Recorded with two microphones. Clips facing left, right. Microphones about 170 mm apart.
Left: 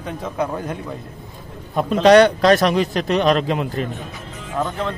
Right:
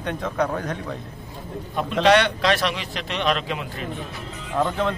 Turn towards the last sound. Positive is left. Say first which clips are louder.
# right 1 dB
turn(degrees=0)  # may be behind; listen again after turning